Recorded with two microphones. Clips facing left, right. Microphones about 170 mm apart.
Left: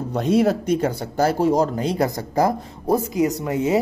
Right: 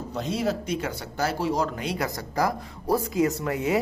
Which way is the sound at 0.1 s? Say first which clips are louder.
Left 9 dB; 55° left (ahead or behind).